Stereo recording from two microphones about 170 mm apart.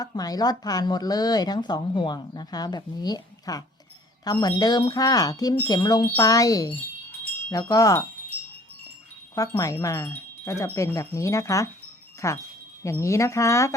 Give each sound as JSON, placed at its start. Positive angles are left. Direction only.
{"t": 0.0, "sound": "speech", "side_deg": 20}
{"t": 9.3, "sound": "wind chime", "side_deg": 20}